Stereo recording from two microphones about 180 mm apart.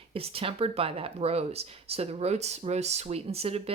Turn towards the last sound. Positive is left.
turn(degrees=-35)  # may be behind; listen again after turning